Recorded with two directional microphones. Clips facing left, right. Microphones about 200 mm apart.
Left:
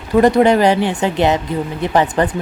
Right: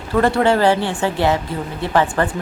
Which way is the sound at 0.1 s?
15° left (ahead or behind).